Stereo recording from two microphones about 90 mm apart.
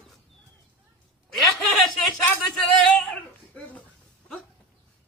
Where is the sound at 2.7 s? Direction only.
5° left (ahead or behind).